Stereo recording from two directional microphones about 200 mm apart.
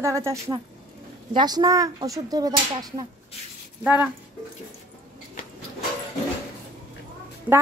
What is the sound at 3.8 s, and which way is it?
Speech, 5° right (ahead or behind).